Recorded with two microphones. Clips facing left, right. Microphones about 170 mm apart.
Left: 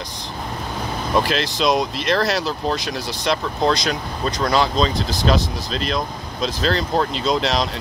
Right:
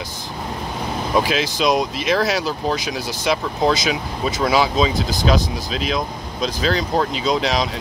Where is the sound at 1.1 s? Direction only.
Centre (ahead or behind).